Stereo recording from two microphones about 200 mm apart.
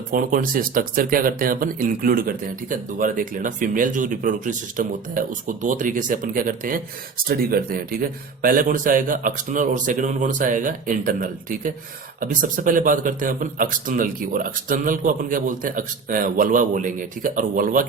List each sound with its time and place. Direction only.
0.1 s speech: 45° right (ahead or behind)